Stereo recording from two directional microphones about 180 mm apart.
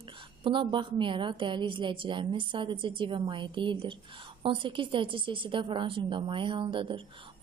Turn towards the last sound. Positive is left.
turn(degrees=-30)  # may be behind; listen again after turning